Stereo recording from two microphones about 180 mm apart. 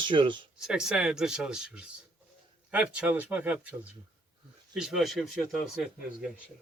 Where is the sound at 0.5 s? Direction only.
5° right (ahead or behind).